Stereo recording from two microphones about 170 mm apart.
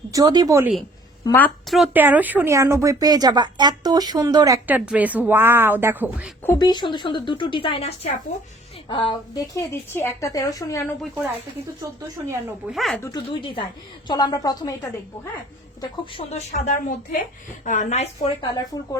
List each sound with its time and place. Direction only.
0.1 s speech: 20° right (ahead or behind)
1.2 s a woman's voice: 15° left (ahead or behind)
1.7 s speech: 5° right (ahead or behind)
6.6 s a woman's voice: 25° left (ahead or behind)
12.7 s speech: centre (ahead or behind)
13.0 s a woman's voice: 25° left (ahead or behind)
16.1 s speech: 40° left (ahead or behind)